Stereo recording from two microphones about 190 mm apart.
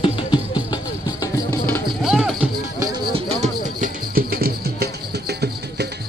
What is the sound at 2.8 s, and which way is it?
Music, 20° right (ahead or behind).